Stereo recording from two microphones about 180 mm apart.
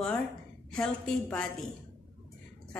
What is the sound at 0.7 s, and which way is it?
Speech, 5° left (ahead or behind).